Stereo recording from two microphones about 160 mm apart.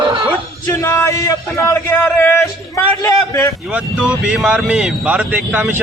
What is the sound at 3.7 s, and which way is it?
Speech, 5° right (ahead or behind).